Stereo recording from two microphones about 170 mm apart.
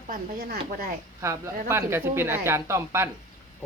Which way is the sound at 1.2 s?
20° right (ahead or behind).